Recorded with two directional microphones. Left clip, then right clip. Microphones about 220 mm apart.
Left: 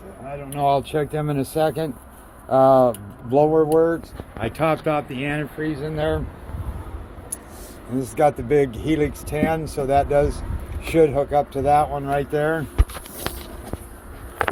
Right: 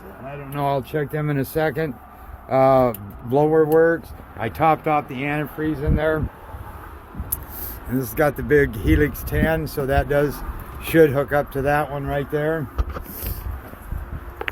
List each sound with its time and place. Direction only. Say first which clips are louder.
0.5 s speech: left 3 dB; 30° right (ahead or behind)
4.4 s speech: right 3 dB; 10° right (ahead or behind)
5.5 s speech: right 1 dB; 30° right (ahead or behind)
7.9 s speech: left 2 dB; 35° right (ahead or behind)